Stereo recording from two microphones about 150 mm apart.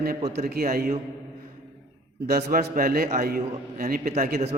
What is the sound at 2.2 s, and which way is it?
A man's voice, 90° right.